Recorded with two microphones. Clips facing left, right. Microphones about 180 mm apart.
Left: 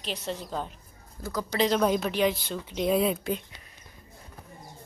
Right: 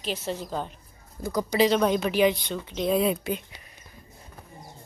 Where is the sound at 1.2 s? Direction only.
15° right (ahead or behind).